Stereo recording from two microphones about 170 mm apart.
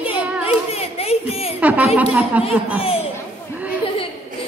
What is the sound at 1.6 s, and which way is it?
Speech, 10° right (ahead or behind).